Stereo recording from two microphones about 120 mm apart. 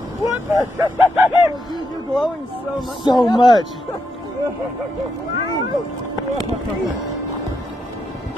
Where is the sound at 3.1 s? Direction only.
40° left (ahead or behind).